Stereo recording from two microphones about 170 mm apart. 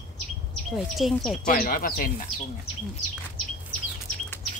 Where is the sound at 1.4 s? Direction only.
55° left (ahead or behind).